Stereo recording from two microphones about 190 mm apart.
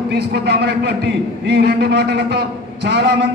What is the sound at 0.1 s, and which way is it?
A man's voice, 60° right (ahead or behind).